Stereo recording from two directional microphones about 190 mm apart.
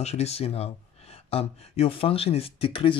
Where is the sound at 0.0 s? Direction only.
35° left (ahead or behind).